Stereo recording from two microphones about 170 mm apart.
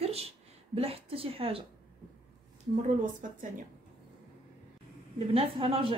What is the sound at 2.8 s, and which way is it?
Speech, 50° right (ahead or behind).